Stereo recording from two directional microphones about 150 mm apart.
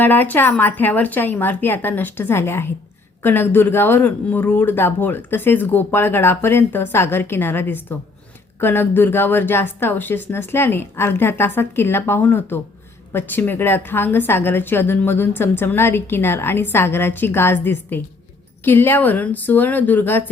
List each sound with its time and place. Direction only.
0.0 s a woman's voice: 10° left (ahead or behind)